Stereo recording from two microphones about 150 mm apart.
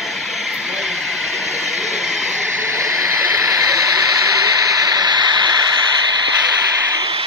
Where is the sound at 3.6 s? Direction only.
20° right (ahead or behind).